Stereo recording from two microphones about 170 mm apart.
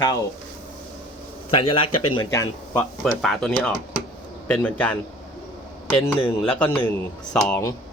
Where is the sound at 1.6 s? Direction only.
30° left (ahead or behind).